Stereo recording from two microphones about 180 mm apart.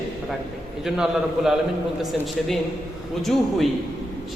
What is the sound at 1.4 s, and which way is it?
Speech, centre (ahead or behind).